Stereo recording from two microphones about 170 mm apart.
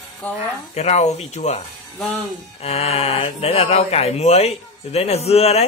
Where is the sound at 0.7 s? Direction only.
40° left (ahead or behind).